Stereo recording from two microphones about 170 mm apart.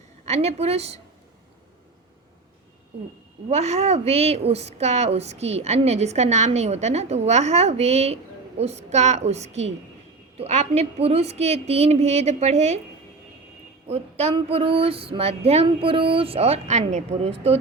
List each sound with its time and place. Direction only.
0.3 s a woman's voice: 40° right (ahead or behind)
3.5 s a woman's voice: 40° right (ahead or behind)
13.8 s a woman's voice: 40° right (ahead or behind)